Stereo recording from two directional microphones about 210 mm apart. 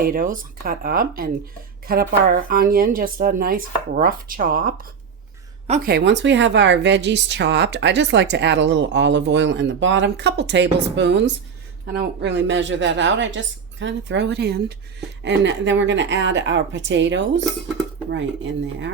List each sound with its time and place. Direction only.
0.0 s speech: 45° right (ahead or behind)
5.6 s a woman's voice: 35° right (ahead or behind)
5.9 s speech: 55° right (ahead or behind)